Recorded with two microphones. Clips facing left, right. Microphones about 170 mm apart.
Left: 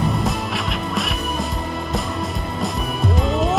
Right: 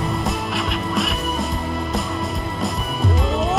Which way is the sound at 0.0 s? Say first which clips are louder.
Left 2 dB; centre (ahead or behind).